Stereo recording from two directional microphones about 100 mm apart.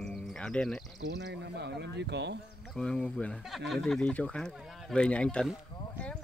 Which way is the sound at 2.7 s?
5° left (ahead or behind).